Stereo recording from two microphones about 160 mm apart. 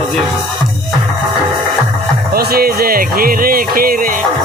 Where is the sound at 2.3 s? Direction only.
75° right (ahead or behind).